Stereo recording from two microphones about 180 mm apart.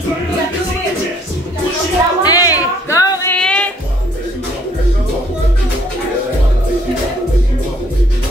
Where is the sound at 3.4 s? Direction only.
5° left (ahead or behind).